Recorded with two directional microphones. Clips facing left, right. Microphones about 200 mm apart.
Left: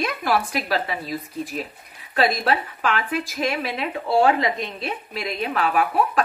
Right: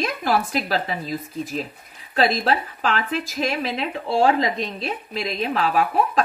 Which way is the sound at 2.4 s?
30° right (ahead or behind).